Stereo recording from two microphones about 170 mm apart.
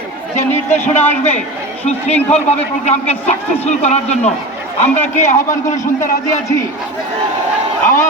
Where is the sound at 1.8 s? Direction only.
40° left (ahead or behind).